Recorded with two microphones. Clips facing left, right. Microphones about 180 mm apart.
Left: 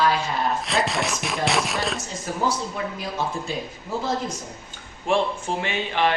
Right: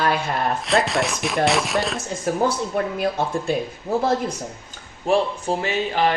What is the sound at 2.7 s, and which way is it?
Speech, 55° right (ahead or behind).